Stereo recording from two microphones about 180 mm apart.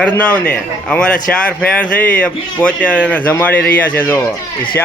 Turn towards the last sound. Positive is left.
turn(degrees=10)  # may be behind; listen again after turning